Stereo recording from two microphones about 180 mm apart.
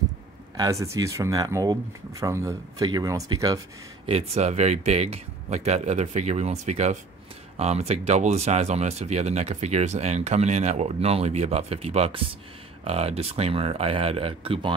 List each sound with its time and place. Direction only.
0.6 s speech: 15° right (ahead or behind)
4.0 s speech: 35° right (ahead or behind)